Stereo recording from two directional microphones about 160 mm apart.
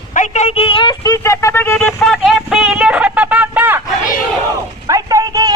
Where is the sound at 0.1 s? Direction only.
50° left (ahead or behind); by 1.9 s 15° left (ahead or behind).